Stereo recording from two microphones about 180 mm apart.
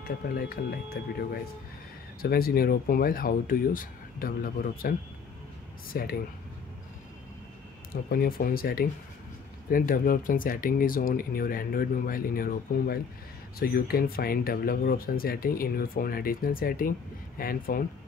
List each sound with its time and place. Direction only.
0.0 s speech: 60° left (ahead or behind)
2.2 s speech: 55° left (ahead or behind)
7.9 s speech: 55° left (ahead or behind)